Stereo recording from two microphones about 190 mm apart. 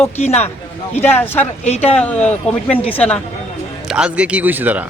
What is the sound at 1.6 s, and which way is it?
Speech, 35° left (ahead or behind).